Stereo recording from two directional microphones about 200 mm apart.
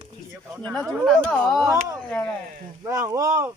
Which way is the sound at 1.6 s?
15° right (ahead or behind).